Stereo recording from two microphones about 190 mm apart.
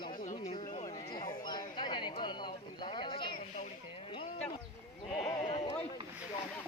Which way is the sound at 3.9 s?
30° left (ahead or behind).